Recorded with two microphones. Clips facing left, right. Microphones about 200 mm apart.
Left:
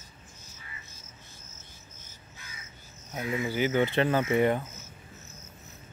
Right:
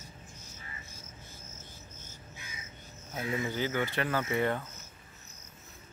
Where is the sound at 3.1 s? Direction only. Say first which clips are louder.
Left 3 dB; 15° left (ahead or behind).